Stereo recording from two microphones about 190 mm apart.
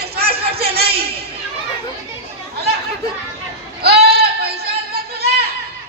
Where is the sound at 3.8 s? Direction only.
55° right (ahead or behind).